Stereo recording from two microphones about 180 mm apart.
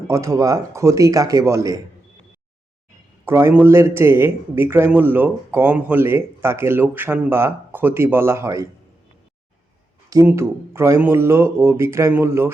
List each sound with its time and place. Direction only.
0.1 s a man's voice: 15° right (ahead or behind)
3.2 s a man's voice: 15° right (ahead or behind)
10.1 s a man's voice: 15° right (ahead or behind)